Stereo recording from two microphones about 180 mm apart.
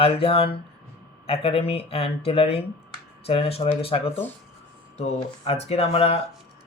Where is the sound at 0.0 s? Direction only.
30° left (ahead or behind).